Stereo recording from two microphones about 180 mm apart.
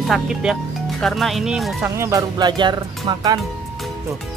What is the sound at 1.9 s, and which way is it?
Speech, 15° right (ahead or behind).